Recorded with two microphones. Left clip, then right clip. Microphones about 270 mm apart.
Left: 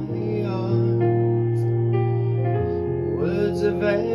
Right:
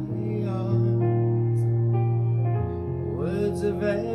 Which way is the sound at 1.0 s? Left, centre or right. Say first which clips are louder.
Left 6 dB; left.